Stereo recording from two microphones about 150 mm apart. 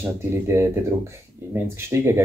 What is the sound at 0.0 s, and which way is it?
Speech, 15° right (ahead or behind).